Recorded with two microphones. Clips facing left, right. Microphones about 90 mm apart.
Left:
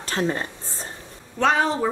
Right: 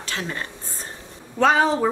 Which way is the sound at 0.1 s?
30° left (ahead or behind).